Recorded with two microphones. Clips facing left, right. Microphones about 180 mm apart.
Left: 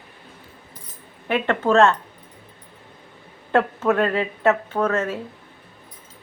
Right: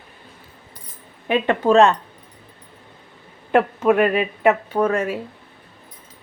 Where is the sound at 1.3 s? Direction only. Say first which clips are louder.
Right 3 dB; 15° right (ahead or behind).